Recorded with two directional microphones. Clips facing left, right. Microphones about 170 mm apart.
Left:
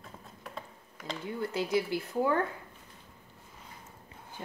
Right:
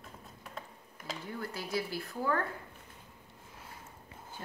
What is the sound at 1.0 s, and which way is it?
Speech, 20° left (ahead or behind).